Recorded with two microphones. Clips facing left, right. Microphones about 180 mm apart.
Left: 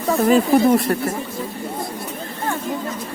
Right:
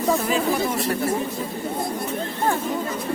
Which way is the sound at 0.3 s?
45° left (ahead or behind).